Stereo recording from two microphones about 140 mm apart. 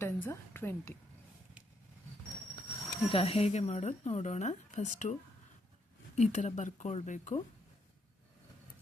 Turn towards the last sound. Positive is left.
turn(degrees=55)  # may be behind; listen again after turning